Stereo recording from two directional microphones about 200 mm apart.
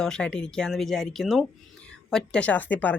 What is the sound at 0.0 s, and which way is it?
Speech, 5° left (ahead or behind).